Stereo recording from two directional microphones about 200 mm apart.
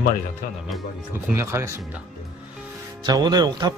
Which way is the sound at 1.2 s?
10° right (ahead or behind).